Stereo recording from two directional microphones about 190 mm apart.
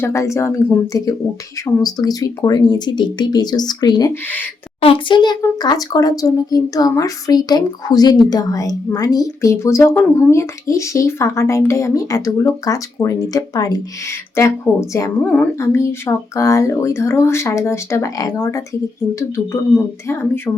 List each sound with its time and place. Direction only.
0.0 s a woman's voice: 15° left (ahead or behind)